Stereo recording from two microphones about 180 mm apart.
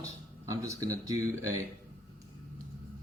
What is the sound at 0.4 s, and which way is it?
Speech, 20° right (ahead or behind).